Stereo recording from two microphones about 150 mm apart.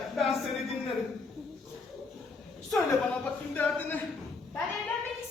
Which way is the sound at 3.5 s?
10° left (ahead or behind).